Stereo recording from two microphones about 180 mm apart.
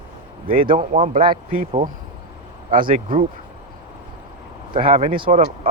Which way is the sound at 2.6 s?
45° right (ahead or behind).